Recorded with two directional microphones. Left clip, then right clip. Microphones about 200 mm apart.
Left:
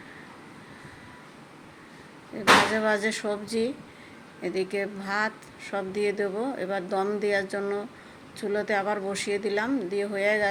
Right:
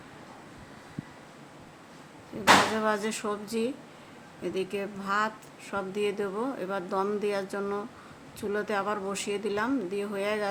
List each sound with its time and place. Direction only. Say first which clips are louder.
2.3 s a woman's voice: left 2 dB; 10° right (ahead or behind)